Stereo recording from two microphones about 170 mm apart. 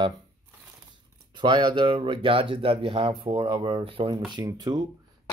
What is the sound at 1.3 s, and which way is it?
Speech, 25° right (ahead or behind).